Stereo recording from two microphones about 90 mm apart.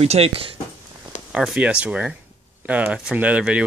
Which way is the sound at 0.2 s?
90° right.